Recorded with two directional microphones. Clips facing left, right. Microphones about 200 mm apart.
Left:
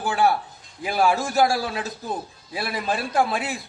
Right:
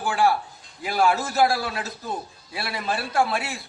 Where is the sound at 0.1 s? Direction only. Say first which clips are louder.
Even; 20° left (ahead or behind).